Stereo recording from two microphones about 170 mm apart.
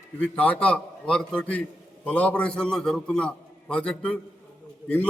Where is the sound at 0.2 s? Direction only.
10° left (ahead or behind).